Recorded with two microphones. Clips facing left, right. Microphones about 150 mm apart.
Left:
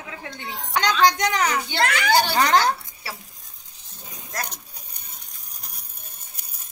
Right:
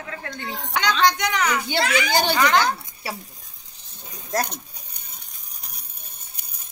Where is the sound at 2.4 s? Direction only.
40° left (ahead or behind).